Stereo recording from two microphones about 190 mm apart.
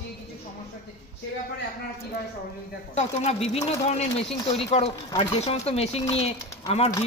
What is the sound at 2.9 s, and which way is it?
Speech, 35° left (ahead or behind).